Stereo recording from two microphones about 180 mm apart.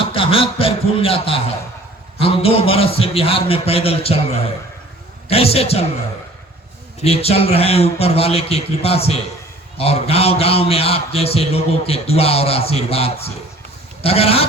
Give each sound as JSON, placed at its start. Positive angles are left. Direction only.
{"t": 0.0, "sound": "a man's voice", "side_deg": 30}
{"t": 7.0, "sound": "a man's voice", "side_deg": 35}